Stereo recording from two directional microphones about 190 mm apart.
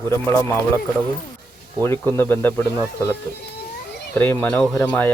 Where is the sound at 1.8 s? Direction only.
10° left (ahead or behind).